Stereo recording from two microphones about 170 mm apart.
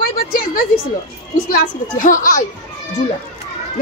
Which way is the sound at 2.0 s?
50° left (ahead or behind).